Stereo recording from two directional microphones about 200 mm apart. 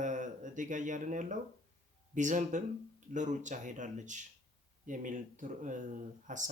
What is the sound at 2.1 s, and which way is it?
Speech, 40° right (ahead or behind).